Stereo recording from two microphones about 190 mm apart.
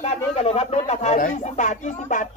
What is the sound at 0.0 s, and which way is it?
Speech, 35° left (ahead or behind).